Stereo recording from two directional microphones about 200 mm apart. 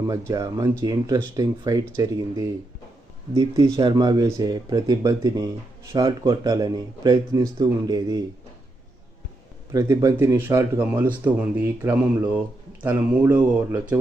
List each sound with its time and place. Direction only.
0.1 s speech: 15° right (ahead or behind)
9.7 s speech: 15° right (ahead or behind)